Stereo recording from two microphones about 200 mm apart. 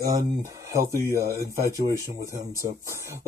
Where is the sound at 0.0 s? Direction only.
20° right (ahead or behind).